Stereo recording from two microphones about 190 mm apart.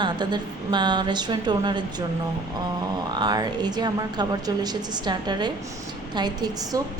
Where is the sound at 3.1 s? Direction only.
20° right (ahead or behind).